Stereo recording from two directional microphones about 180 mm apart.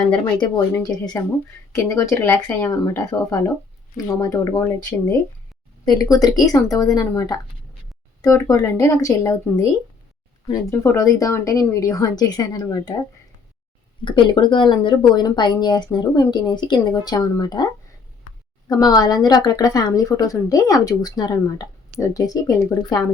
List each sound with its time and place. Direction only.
1.2 s speech: 15° left (ahead or behind)
14.0 s speech: 25° left (ahead or behind)
18.7 s speech: 20° left (ahead or behind)